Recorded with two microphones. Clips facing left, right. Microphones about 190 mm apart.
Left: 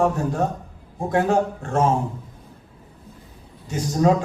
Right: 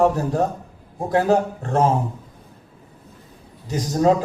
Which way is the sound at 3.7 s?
35° right (ahead or behind).